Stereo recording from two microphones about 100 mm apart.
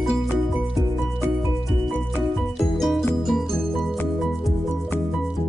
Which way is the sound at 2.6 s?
Centre (ahead or behind).